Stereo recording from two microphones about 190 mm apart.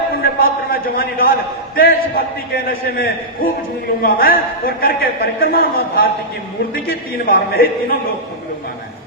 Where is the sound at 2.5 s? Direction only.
50° left (ahead or behind).